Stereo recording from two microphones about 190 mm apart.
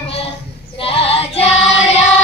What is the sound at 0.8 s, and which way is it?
Female singing, 30° left (ahead or behind).